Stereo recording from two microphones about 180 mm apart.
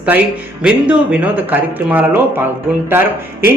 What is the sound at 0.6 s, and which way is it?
Speech, 5° right (ahead or behind).